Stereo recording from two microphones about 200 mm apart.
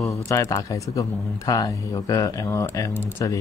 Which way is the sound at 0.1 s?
15° left (ahead or behind).